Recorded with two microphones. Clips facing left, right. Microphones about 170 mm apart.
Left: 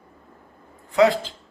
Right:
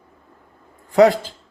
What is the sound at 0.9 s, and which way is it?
Speech, 45° right (ahead or behind).